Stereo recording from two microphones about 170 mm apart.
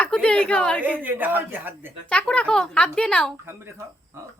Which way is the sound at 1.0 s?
10° right (ahead or behind).